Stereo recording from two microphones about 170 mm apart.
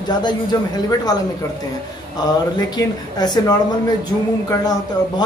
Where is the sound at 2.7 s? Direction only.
25° left (ahead or behind).